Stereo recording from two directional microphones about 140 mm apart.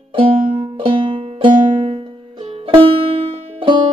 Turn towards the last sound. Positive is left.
turn(degrees=-40)  # may be behind; listen again after turning